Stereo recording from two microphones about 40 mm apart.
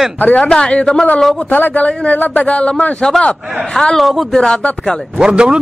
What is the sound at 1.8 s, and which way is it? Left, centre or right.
Speech, left.